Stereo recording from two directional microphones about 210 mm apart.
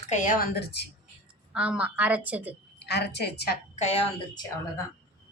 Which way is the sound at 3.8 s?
30° left (ahead or behind).